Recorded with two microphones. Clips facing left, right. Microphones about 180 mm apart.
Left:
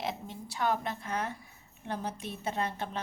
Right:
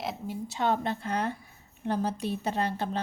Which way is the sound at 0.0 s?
Centre (ahead or behind).